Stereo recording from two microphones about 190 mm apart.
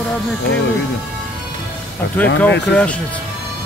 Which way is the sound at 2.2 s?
10° left (ahead or behind).